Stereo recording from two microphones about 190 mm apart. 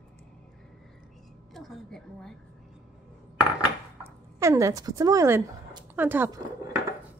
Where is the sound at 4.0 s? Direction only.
15° right (ahead or behind).